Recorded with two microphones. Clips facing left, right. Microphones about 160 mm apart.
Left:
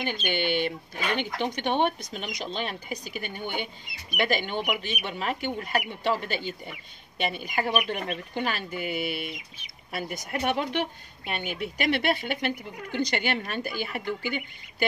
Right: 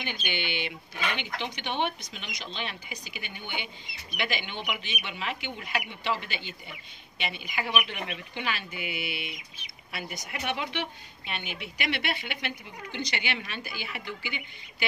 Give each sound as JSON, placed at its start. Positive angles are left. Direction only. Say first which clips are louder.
{"t": 0.0, "sound": "speech", "louder": "left 6 dB", "side_deg": 45}